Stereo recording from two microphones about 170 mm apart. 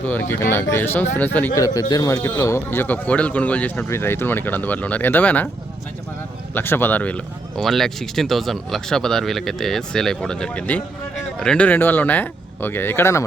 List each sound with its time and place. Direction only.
0.0 s speech: 10° left (ahead or behind)
6.5 s speech: 10° left (ahead or behind)